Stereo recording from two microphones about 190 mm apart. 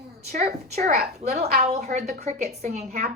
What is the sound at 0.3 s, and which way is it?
A woman's voice, 35° right (ahead or behind).